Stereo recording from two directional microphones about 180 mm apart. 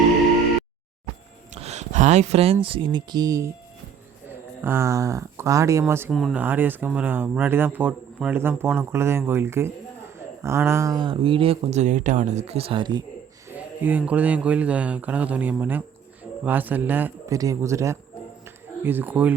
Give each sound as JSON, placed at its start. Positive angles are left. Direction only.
{"t": 1.5, "sound": "speech", "side_deg": -35}
{"t": 4.6, "sound": "a man's voice", "side_deg": -15}
{"t": 6.1, "sound": "speech", "side_deg": 0}
{"t": 6.4, "sound": "a man's voice", "side_deg": -10}
{"t": 13.6, "sound": "a man's voice", "side_deg": -10}
{"t": 18.4, "sound": "a sound", "side_deg": -10}